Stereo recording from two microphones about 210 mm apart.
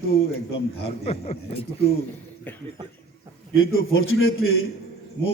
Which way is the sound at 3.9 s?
75° left (ahead or behind).